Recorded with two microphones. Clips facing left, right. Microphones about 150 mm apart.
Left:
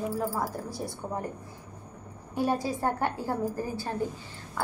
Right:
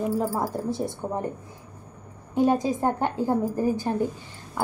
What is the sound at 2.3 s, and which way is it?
A woman's voice, 20° right (ahead or behind).